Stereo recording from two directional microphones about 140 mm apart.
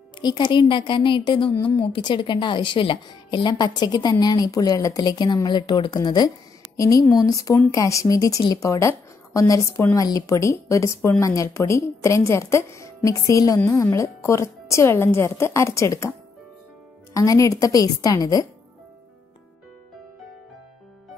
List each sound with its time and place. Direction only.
0.2 s a woman's voice: 30° left (ahead or behind)